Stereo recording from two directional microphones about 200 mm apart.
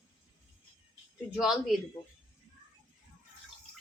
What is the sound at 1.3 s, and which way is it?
Speech, 5° right (ahead or behind).